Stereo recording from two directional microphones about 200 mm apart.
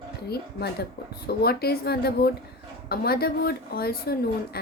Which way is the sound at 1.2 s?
50° left (ahead or behind).